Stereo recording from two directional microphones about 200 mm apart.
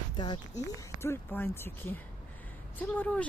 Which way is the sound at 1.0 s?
10° left (ahead or behind).